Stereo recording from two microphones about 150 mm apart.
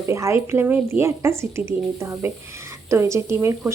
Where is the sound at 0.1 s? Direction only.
20° right (ahead or behind).